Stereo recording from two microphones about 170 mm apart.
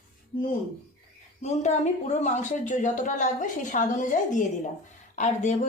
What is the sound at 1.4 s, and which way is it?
Speech, 40° left (ahead or behind).